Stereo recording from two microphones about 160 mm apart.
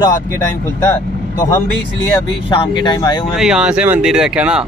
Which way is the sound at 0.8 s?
20° left (ahead or behind).